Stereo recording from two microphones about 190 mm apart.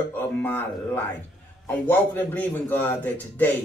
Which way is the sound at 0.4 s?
10° left (ahead or behind).